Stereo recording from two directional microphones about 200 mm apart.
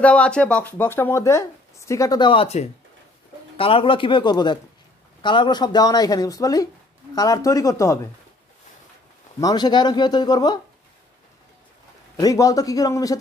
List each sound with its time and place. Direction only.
0.0 s speech: 5° left (ahead or behind)
9.4 s speech: 20° left (ahead or behind)
12.2 s speech: 15° left (ahead or behind)